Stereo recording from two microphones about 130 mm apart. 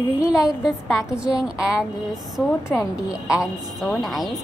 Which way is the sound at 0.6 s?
Centre (ahead or behind).